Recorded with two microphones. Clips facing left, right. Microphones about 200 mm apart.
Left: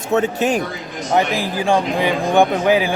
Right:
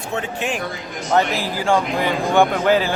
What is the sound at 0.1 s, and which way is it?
Speech, 40° left (ahead or behind).